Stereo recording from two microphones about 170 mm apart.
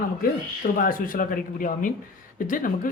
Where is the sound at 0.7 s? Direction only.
55° left (ahead or behind).